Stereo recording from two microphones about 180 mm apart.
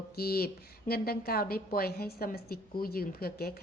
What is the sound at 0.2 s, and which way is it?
A woman's voice, 60° left (ahead or behind).